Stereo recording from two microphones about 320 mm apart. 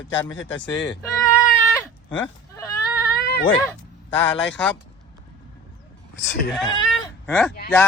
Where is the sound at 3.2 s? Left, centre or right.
Left.